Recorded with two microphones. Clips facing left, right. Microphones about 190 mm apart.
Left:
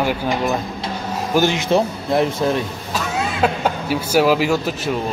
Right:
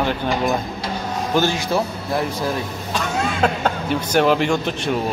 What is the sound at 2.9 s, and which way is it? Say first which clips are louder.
Speech: even; 5° left (ahead or behind).